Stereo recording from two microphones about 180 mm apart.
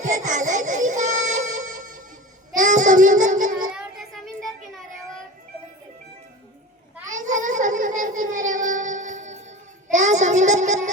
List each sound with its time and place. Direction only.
0.0 s music: 45° right (ahead or behind)
2.6 s child singing: 45° right (ahead or behind)
3.8 s child singing: centre (ahead or behind)
7.1 s a sound: 45° right (ahead or behind)